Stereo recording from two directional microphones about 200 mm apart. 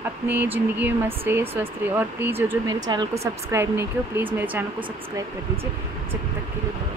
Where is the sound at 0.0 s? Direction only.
10° right (ahead or behind).